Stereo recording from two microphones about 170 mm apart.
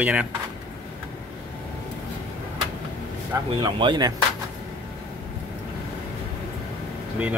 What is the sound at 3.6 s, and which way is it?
Speech, 25° right (ahead or behind).